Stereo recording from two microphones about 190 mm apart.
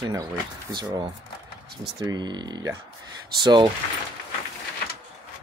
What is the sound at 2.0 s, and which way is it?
Speech, 20° right (ahead or behind).